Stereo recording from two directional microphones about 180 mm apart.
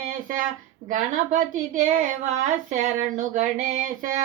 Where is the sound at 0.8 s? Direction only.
45° right (ahead or behind).